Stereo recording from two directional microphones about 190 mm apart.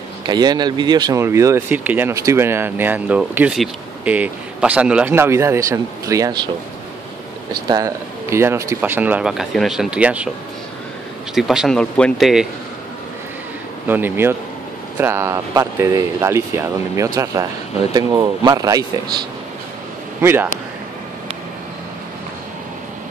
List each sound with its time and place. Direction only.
0.3 s speech: 20° right (ahead or behind)
7.6 s speech: 20° right (ahead or behind)
11.3 s speech: centre (ahead or behind)
13.8 s speech: 10° right (ahead or behind)
20.2 s speech: 10° right (ahead or behind)